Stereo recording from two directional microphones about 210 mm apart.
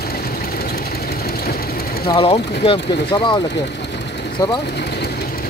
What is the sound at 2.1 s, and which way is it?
Speech, 25° left (ahead or behind).